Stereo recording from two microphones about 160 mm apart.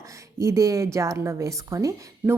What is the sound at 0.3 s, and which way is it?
A woman's voice, 20° right (ahead or behind).